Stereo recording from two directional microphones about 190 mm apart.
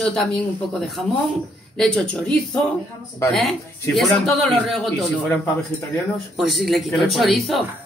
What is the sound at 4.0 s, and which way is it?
Speech, centre (ahead or behind).